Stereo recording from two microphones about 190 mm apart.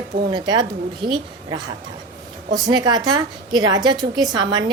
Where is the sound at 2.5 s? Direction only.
20° right (ahead or behind).